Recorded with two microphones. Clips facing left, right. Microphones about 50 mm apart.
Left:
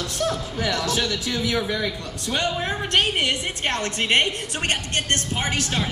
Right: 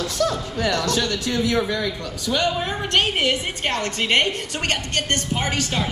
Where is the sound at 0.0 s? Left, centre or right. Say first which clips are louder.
Right 3 dB; right.